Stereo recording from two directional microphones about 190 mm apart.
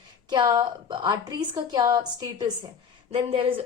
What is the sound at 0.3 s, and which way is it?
A woman's voice, 25° right (ahead or behind).